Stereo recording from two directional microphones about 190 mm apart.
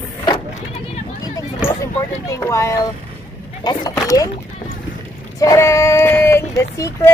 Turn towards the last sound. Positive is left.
turn(degrees=15)  # may be behind; listen again after turning